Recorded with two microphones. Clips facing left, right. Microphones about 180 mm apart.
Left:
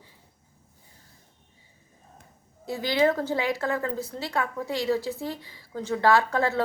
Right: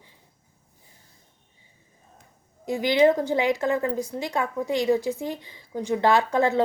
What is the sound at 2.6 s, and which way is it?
A woman's voice, 15° right (ahead or behind).